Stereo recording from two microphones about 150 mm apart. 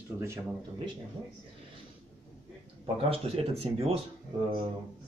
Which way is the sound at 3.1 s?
40° right (ahead or behind).